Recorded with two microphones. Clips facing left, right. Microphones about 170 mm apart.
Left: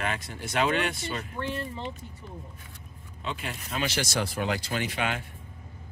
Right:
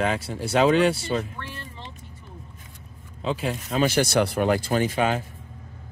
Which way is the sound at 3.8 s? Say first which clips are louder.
Right 9 dB; 55° right (ahead or behind).